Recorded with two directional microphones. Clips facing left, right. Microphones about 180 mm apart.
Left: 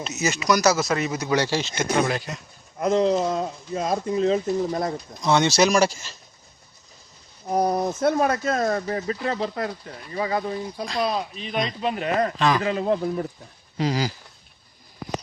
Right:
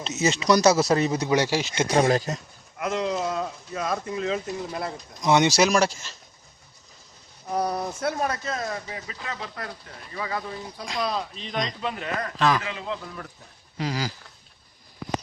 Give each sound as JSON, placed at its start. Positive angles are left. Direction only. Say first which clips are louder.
{"t": 0.0, "sound": "speech", "louder": "right 1 dB", "side_deg": -30}
{"t": 1.3, "sound": "speech", "louder": "even", "side_deg": -15}
{"t": 1.8, "sound": "speech", "louder": "right 4 dB", "side_deg": -35}
{"t": 2.7, "sound": "speech", "louder": "left 6 dB", "side_deg": 35}
{"t": 5.2, "sound": "speech", "louder": "even", "side_deg": -15}
{"t": 5.5, "sound": "speech", "louder": "left 2 dB", "side_deg": 0}
{"t": 7.7, "sound": "speech", "louder": "left 6 dB", "side_deg": 20}
{"t": 8.4, "sound": "speech", "louder": "left 8 dB", "side_deg": 45}
{"t": 11.0, "sound": "speech", "louder": "left 2 dB", "side_deg": 15}
{"t": 11.8, "sound": "speech", "louder": "left 7 dB", "side_deg": 20}
{"t": 12.4, "sound": "speech", "louder": "right 3 dB", "side_deg": 0}
{"t": 12.6, "sound": "speech", "louder": "left 10 dB", "side_deg": 45}
{"t": 13.7, "sound": "speech", "louder": "left 5 dB", "side_deg": 25}